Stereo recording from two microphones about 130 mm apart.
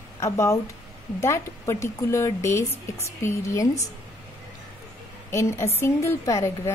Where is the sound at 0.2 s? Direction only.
20° left (ahead or behind).